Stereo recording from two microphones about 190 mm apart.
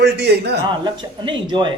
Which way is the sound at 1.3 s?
25° right (ahead or behind).